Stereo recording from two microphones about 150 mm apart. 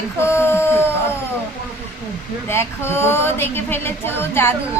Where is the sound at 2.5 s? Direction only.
15° left (ahead or behind).